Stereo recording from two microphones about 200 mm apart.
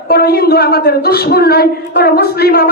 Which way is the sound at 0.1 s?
50° left (ahead or behind).